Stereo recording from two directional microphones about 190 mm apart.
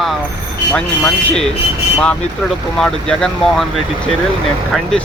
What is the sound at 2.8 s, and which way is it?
Speech, 5° left (ahead or behind).